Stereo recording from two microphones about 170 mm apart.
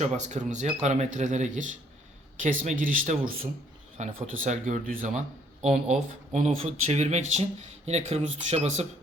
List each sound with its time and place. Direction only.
0.0 s speech: 45° right (ahead or behind)